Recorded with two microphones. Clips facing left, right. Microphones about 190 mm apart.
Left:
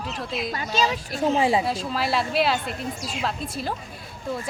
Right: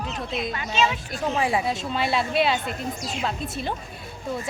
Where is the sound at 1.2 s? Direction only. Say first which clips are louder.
Left 3 dB; 25° left (ahead or behind).